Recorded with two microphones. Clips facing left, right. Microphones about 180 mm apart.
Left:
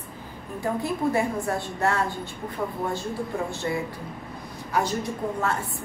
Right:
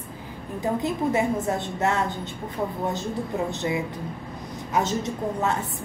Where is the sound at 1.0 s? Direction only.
20° right (ahead or behind).